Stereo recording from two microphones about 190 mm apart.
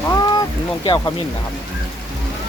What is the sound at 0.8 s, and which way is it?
Speech, 20° left (ahead or behind).